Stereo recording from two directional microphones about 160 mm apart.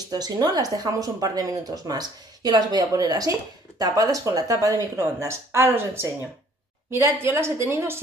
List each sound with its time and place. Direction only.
0.0 s a woman's voice: 25° right (ahead or behind)